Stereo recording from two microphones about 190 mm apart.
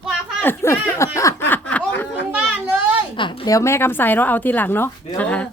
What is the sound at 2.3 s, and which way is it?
Children playing, 10° right (ahead or behind).